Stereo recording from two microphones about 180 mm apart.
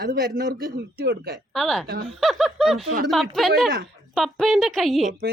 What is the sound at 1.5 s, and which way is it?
Speech, centre (ahead or behind).